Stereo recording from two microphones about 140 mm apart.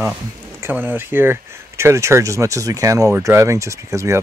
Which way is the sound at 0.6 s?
15° right (ahead or behind).